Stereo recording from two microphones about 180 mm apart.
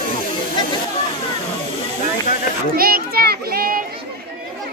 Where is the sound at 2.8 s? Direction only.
55° right (ahead or behind).